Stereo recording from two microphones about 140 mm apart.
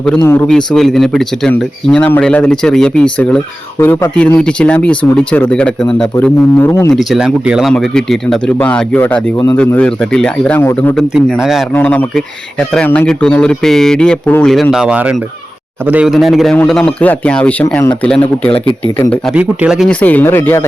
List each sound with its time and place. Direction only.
0.2 s speech: 20° left (ahead or behind)
0.4 s speech: 5° left (ahead or behind); by 6.9 s 20° left (ahead or behind)
6.9 s speech: centre (ahead or behind)
11.3 s speech: centre (ahead or behind)
11.7 s speech: 10° left (ahead or behind)
16.8 s speech: 10° left (ahead or behind)
19.3 s speech: 5° right (ahead or behind)
19.9 s speech: 10° left (ahead or behind)